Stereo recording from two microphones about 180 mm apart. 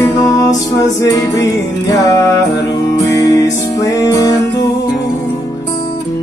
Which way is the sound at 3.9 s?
20° left (ahead or behind).